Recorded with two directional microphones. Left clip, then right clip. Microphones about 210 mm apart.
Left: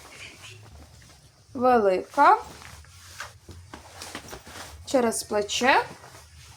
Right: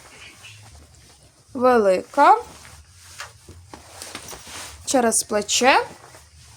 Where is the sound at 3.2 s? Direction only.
40° right (ahead or behind).